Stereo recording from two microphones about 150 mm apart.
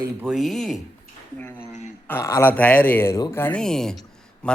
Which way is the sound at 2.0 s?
15° left (ahead or behind).